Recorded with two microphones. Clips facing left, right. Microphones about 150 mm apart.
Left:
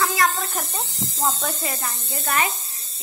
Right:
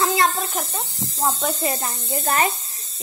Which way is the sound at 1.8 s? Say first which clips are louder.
Right 4 dB; 30° right (ahead or behind).